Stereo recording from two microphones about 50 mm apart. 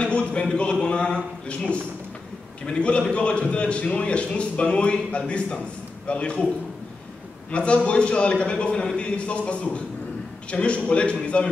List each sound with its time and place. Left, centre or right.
0.0 s a sound: left
2.6 s a man's voice: left
7.5 s a man's voice: left